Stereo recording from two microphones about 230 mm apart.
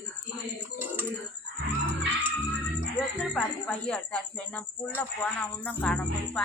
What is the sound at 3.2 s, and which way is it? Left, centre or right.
Speech, centre.